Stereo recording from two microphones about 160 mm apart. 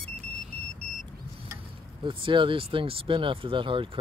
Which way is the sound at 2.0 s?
30° right (ahead or behind).